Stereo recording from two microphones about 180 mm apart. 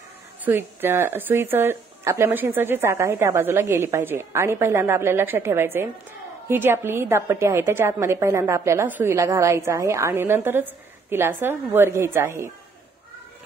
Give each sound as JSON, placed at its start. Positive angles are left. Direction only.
{"t": 0.5, "sound": "a woman's voice", "side_deg": -10}